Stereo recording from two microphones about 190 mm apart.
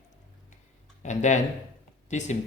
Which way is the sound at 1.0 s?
40° left (ahead or behind).